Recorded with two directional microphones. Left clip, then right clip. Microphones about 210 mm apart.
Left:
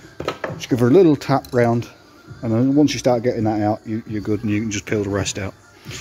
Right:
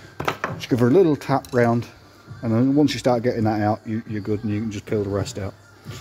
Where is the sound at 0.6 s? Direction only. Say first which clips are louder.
Left 3 dB; centre (ahead or behind).